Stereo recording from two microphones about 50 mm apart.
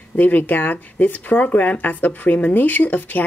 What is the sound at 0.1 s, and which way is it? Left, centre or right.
Speech, left.